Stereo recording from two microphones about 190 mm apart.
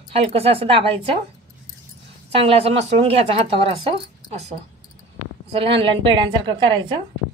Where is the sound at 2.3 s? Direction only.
30° right (ahead or behind).